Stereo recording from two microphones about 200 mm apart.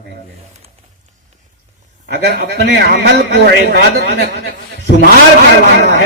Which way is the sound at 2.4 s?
50° right (ahead or behind).